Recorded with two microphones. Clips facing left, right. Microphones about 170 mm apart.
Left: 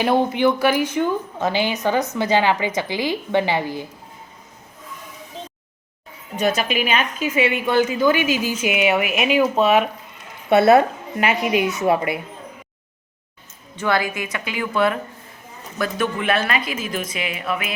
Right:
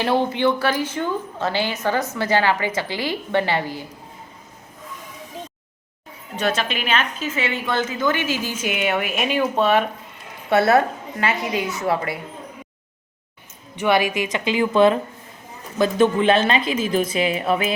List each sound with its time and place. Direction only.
0.0 s a woman's voice: 15° left (ahead or behind)
6.3 s a woman's voice: 10° left (ahead or behind)
10.5 s a woman's voice: 20° left (ahead or behind)
13.8 s a woman's voice: 20° right (ahead or behind)